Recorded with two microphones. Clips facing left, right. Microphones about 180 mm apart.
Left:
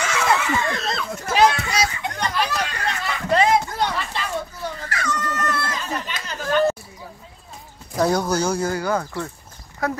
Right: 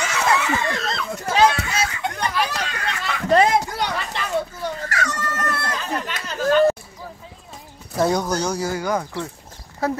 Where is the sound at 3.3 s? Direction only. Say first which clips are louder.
Right 2 dB; 45° right (ahead or behind).